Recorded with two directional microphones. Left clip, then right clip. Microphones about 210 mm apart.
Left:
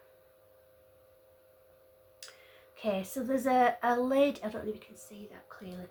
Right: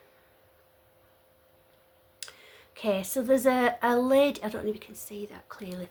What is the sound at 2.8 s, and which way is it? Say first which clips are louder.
Speech: right 5 dB; 45° right (ahead or behind).